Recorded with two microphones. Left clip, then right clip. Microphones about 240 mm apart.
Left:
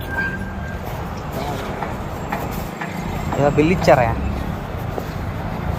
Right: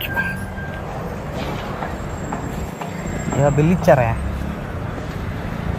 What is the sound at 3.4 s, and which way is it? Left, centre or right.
Speech, right.